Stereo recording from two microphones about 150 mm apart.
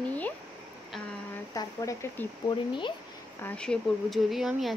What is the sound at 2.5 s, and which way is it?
Speech, 35° left (ahead or behind).